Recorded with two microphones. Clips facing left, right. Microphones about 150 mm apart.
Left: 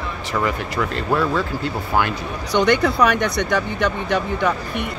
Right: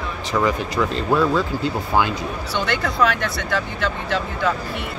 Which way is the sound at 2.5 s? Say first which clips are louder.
Left 8 dB; 15° left (ahead or behind).